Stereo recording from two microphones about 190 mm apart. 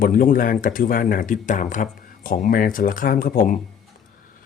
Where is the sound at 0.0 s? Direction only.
50° left (ahead or behind).